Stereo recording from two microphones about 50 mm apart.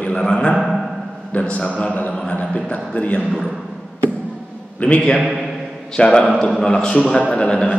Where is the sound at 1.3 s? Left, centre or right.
Left.